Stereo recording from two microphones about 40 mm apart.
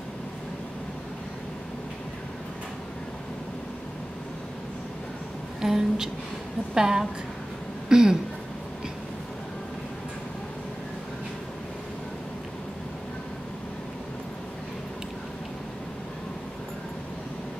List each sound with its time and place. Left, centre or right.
5.6 s speech: centre